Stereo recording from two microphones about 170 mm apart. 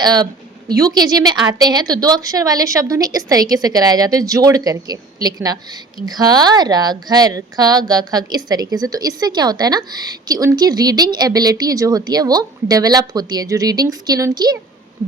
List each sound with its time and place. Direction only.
0.0 s a woman's voice: 25° right (ahead or behind)